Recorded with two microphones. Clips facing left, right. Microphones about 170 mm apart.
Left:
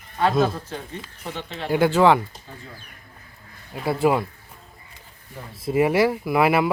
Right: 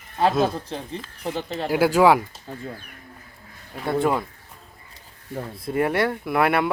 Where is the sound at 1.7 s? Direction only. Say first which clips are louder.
Even; 5° right (ahead or behind).